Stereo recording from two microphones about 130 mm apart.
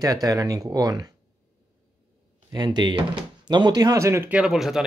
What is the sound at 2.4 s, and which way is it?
Speech, 35° right (ahead or behind).